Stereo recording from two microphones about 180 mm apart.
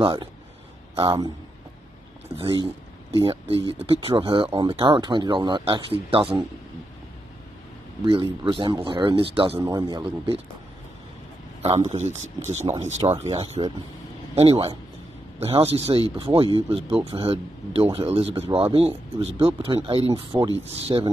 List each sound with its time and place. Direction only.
0.0 s speech: 25° right (ahead or behind)
2.3 s a man's voice: 30° right (ahead or behind)
8.0 s speech: 25° right (ahead or behind)
11.6 s a man's voice: 35° right (ahead or behind)
20.3 s speech: 10° right (ahead or behind)
20.8 s speech: 25° right (ahead or behind)